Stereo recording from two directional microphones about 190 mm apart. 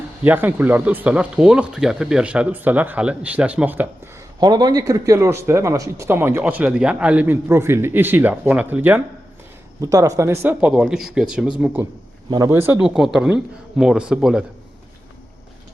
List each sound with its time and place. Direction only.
0.3 s speech: 10° right (ahead or behind)
4.4 s a man's voice: 20° right (ahead or behind); by 14.4 s 5° right (ahead or behind)